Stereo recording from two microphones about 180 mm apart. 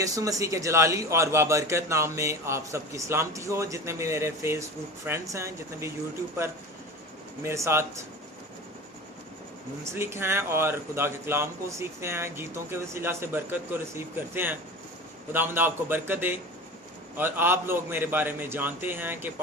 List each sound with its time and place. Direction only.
0.0 s speech: 20° right (ahead or behind)
7.4 s speech: 15° right (ahead or behind)
9.9 s speech: 15° right (ahead or behind)